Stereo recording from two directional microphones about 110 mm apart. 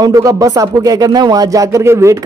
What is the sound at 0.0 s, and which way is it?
Speech, 30° right (ahead or behind).